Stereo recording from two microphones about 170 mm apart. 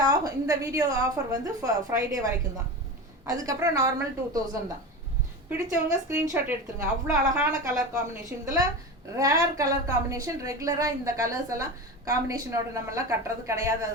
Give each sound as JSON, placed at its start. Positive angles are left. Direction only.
{"t": 0.0, "sound": "a woman's voice", "side_deg": -20}
{"t": 3.2, "sound": "a woman's voice", "side_deg": -20}
{"t": 5.6, "sound": "a woman's voice", "side_deg": -15}